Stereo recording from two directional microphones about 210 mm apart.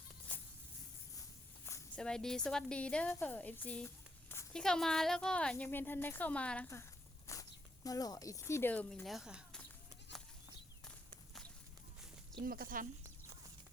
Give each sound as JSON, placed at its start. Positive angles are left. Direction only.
{"t": 0.3, "sound": "a sound", "side_deg": 5}
{"t": 1.6, "sound": "a woman's voice", "side_deg": 10}
{"t": 7.3, "sound": "walk", "side_deg": 15}
{"t": 7.9, "sound": "speech", "side_deg": 15}
{"t": 12.4, "sound": "speech", "side_deg": -45}